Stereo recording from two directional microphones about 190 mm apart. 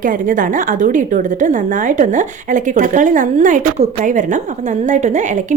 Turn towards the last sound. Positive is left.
turn(degrees=-40)  # may be behind; listen again after turning